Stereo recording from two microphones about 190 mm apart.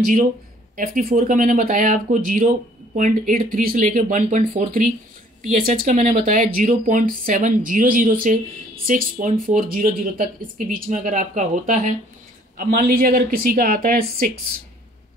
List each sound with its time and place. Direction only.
0.7 s speech: 45° right (ahead or behind)